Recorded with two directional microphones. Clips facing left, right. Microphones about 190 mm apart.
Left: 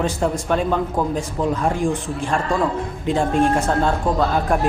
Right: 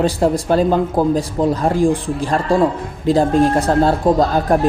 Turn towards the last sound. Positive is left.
turn(degrees=-35)  # may be behind; listen again after turning